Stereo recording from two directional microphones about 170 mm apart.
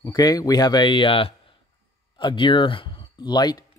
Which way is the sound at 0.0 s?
25° left (ahead or behind).